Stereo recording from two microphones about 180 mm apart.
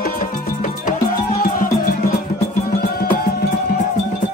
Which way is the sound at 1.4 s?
55° left (ahead or behind).